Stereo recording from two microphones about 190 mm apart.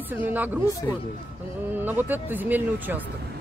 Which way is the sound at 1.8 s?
10° right (ahead or behind).